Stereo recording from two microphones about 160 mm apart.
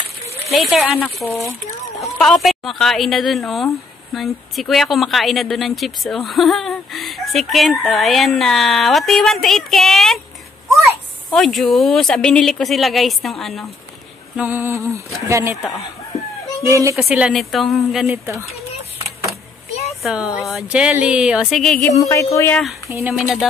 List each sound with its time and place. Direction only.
0.6 s a woman's voice: centre (ahead or behind)
14.3 s a sound: 10° right (ahead or behind)
16.6 s speech: 20° right (ahead or behind)
16.9 s a woman's voice: 5° right (ahead or behind)
19.7 s a sound: 40° left (ahead or behind)
20.0 s a woman's voice: 5° right (ahead or behind)
21.9 s music: 20° left (ahead or behind)
22.8 s a sound: 15° right (ahead or behind)
23.1 s a woman's voice: centre (ahead or behind)